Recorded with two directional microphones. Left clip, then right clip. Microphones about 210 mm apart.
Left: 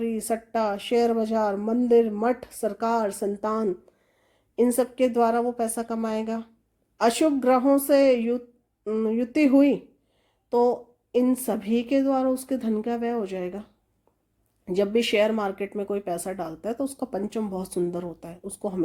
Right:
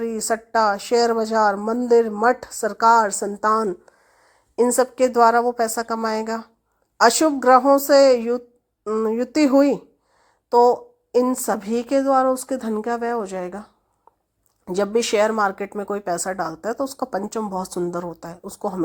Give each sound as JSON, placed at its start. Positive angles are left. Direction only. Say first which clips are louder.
{"t": 0.5, "sound": "a woman's voice", "louder": "right 6 dB", "side_deg": -15}